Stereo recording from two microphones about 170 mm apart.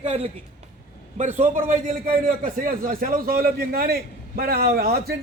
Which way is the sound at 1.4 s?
45° right (ahead or behind).